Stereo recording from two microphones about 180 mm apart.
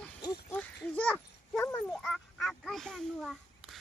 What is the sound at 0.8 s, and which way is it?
A child's voice, 5° left (ahead or behind).